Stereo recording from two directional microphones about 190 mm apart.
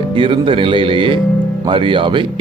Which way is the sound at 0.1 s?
25° right (ahead or behind).